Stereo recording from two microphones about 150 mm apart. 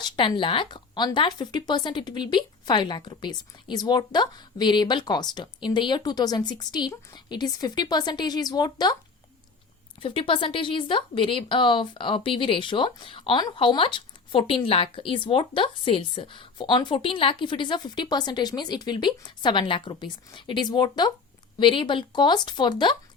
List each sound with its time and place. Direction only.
0.0 s speech: 35° left (ahead or behind)
10.0 s speech: 35° left (ahead or behind)